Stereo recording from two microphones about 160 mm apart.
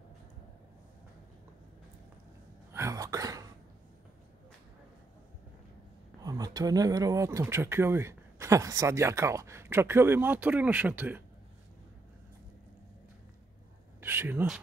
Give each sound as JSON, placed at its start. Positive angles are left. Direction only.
{"t": 2.7, "sound": "cough", "side_deg": -20}
{"t": 6.2, "sound": "speech", "side_deg": -25}
{"t": 14.0, "sound": "speech", "side_deg": -15}